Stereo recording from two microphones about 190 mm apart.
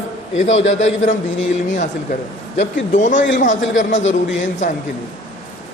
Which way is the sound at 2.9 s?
40° left (ahead or behind).